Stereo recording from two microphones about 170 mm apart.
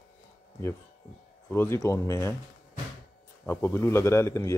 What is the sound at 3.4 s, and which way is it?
Speech, 15° left (ahead or behind).